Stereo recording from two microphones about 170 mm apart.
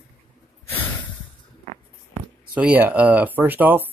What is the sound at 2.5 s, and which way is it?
Speech, 10° right (ahead or behind).